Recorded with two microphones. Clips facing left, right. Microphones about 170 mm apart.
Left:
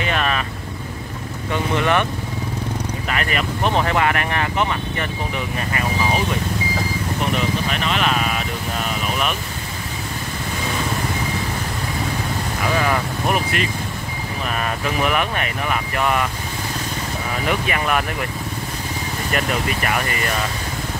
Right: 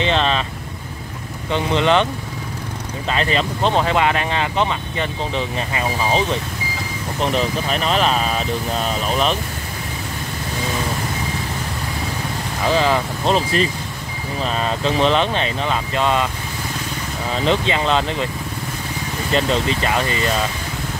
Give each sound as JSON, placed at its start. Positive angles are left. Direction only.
{"t": 0.0, "sound": "vehicle", "side_deg": -25}
{"t": 1.5, "sound": "speech", "side_deg": -20}
{"t": 3.1, "sound": "speech", "side_deg": -25}
{"t": 7.3, "sound": "speech", "side_deg": -35}
{"t": 12.7, "sound": "speech", "side_deg": -25}
{"t": 17.5, "sound": "speech", "side_deg": -25}
{"t": 19.3, "sound": "speech", "side_deg": -25}